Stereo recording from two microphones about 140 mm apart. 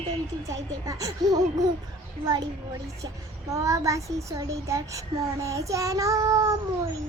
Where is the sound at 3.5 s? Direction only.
20° right (ahead or behind).